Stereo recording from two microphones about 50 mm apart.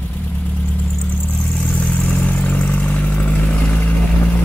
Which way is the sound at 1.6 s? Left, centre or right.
Left.